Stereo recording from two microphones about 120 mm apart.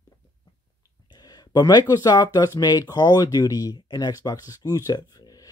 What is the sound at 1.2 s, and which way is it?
Speech, 35° left (ahead or behind).